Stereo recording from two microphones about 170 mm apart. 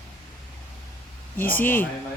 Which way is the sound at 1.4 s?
10° left (ahead or behind).